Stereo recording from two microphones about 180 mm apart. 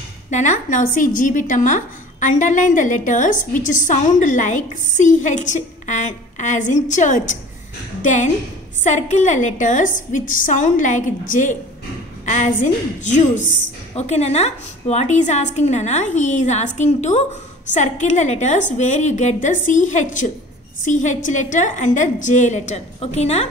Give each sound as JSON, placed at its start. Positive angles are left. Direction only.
{"t": 0.3, "sound": "a woman's voice", "side_deg": 40}